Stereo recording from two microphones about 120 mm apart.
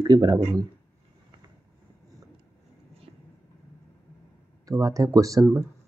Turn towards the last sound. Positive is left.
turn(degrees=-25)  # may be behind; listen again after turning